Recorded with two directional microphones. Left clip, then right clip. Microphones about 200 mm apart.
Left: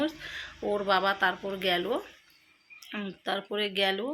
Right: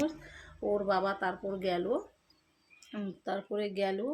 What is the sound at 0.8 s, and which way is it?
Speech, 5° right (ahead or behind).